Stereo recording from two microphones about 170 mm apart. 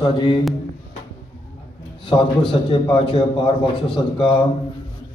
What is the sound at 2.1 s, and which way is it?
A man's voice, 30° left (ahead or behind).